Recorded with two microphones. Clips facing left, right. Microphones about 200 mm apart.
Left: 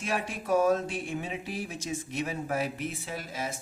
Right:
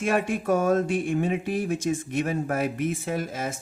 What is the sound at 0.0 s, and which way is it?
Speech, 50° right (ahead or behind).